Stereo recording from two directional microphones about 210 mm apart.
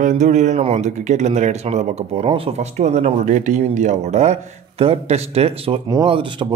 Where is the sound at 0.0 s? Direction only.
35° right (ahead or behind).